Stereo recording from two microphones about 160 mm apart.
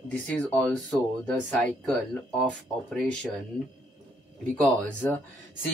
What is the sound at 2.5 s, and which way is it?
Speech, 5° left (ahead or behind).